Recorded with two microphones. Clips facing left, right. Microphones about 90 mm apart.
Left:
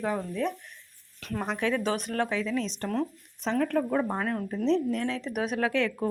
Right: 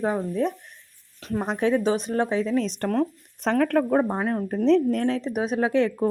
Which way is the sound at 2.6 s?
50° right (ahead or behind).